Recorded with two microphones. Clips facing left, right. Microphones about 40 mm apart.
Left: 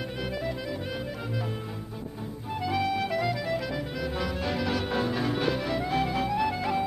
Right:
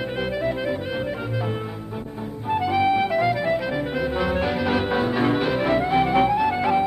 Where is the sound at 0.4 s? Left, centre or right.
Right.